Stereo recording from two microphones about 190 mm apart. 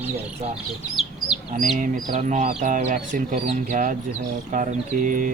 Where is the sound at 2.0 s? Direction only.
35° right (ahead or behind).